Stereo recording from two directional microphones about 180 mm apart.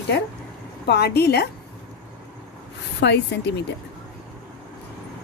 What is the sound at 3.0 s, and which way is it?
Speech, 70° left (ahead or behind).